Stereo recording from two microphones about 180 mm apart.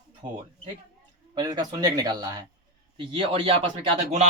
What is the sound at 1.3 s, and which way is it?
Speech, 20° right (ahead or behind).